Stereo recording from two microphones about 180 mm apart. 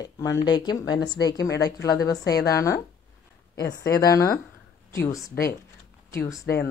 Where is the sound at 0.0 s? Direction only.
20° left (ahead or behind).